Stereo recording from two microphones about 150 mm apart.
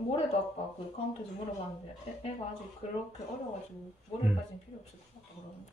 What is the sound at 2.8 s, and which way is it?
Speech, 50° left (ahead or behind).